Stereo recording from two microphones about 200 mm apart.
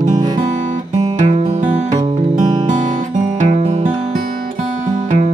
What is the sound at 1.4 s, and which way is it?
Music, 35° right (ahead or behind).